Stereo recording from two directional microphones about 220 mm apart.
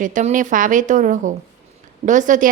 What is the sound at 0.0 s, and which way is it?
A woman's voice, 35° right (ahead or behind).